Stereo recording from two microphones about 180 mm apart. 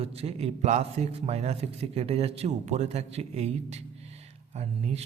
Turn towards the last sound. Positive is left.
turn(degrees=-35)  # may be behind; listen again after turning